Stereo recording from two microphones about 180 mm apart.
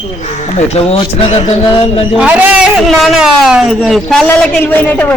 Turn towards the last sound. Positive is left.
turn(degrees=10)  # may be behind; listen again after turning